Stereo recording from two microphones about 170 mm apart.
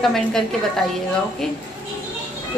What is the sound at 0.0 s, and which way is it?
Speech, centre (ahead or behind).